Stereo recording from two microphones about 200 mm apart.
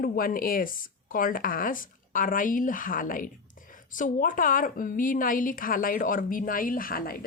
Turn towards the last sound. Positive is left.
turn(degrees=45)  # may be behind; listen again after turning